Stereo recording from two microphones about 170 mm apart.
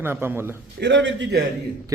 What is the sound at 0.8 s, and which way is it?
Speech, 90° right.